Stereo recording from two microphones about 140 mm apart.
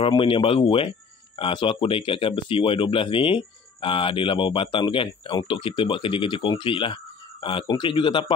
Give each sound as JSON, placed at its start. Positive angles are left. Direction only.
{"t": 0.0, "sound": "speech", "side_deg": 40}